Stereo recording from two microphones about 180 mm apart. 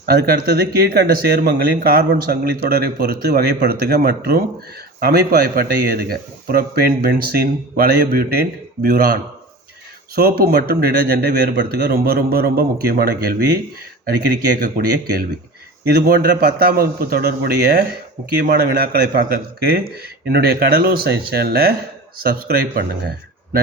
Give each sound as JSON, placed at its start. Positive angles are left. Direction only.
{"t": 0.0, "sound": "speech", "side_deg": -55}
{"t": 10.2, "sound": "speech", "side_deg": -60}
{"t": 14.6, "sound": "speech", "side_deg": -55}